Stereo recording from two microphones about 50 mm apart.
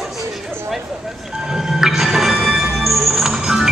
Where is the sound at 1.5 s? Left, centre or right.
Centre.